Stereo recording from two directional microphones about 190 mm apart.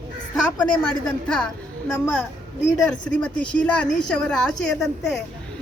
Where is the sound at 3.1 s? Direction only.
5° left (ahead or behind).